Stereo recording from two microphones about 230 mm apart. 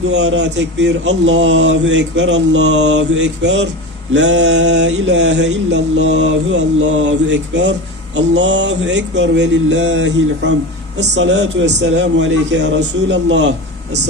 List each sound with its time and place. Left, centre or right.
0.1 s mantra: right